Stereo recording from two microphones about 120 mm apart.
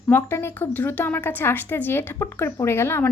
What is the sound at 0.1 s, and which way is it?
A woman's voice, 20° left (ahead or behind).